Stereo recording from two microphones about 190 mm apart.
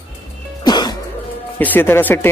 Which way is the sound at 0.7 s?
20° left (ahead or behind).